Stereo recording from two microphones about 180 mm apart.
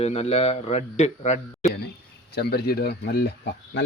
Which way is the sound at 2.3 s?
65° left (ahead or behind).